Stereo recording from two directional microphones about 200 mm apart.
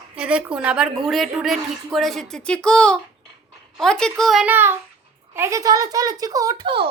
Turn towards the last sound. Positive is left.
turn(degrees=-25)  # may be behind; listen again after turning